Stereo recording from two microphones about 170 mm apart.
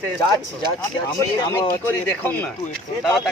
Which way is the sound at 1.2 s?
20° left (ahead or behind).